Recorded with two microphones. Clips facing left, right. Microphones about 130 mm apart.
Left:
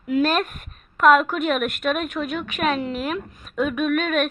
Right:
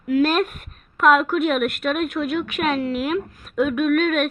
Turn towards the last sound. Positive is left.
turn(degrees=0)  # may be behind; listen again after turning